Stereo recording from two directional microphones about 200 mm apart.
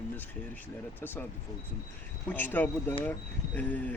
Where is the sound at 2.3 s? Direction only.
10° left (ahead or behind).